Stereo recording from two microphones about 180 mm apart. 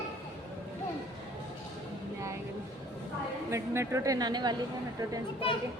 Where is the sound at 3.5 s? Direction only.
15° right (ahead or behind).